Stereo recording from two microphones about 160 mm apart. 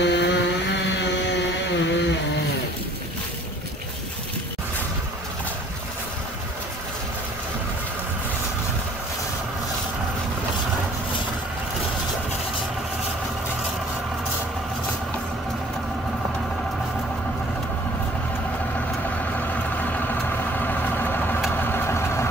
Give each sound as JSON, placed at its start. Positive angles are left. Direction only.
{"t": 0.0, "sound": "vehicle", "side_deg": 90}
{"t": 19.9, "sound": "vehicle", "side_deg": 10}